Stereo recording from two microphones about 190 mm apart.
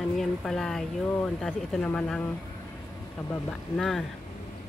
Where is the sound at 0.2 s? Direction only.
Centre (ahead or behind).